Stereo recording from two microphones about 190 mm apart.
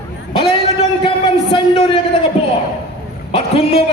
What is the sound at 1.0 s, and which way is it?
Speech, 25° left (ahead or behind).